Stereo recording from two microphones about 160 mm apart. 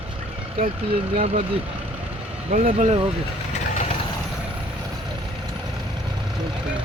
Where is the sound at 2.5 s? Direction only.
50° right (ahead or behind).